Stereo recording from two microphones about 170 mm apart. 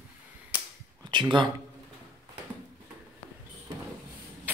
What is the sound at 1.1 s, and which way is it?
Speech, 25° right (ahead or behind).